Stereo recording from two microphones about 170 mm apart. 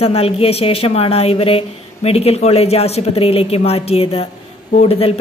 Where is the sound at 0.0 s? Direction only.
35° left (ahead or behind).